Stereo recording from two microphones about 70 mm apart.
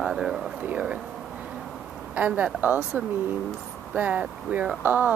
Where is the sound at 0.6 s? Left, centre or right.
Centre.